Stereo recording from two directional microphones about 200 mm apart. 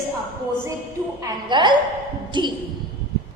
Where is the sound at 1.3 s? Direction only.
25° right (ahead or behind).